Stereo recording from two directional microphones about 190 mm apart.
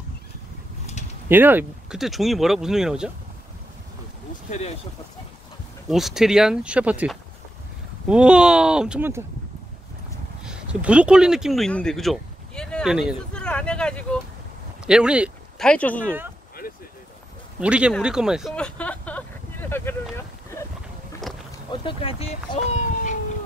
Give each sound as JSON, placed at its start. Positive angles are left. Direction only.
{"t": 1.3, "sound": "speech", "side_deg": -10}
{"t": 4.5, "sound": "speech", "side_deg": 35}
{"t": 5.9, "sound": "speech", "side_deg": 0}
{"t": 10.4, "sound": "speech", "side_deg": -5}
{"t": 15.6, "sound": "speech", "side_deg": 5}
{"t": 17.6, "sound": "speech", "side_deg": -5}
{"t": 17.9, "sound": "a sound", "side_deg": -5}
{"t": 21.3, "sound": "boat", "side_deg": 0}
{"t": 21.8, "sound": "speech", "side_deg": 30}